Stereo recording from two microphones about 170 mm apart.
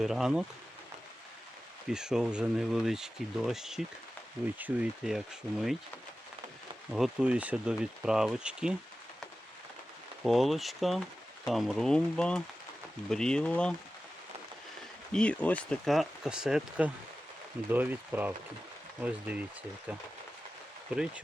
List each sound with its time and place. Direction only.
0.0 s speech: centre (ahead or behind)
1.9 s speech: 5° right (ahead or behind)
6.9 s speech: 5° right (ahead or behind)
10.2 s speech: centre (ahead or behind)
15.1 s speech: 5° left (ahead or behind)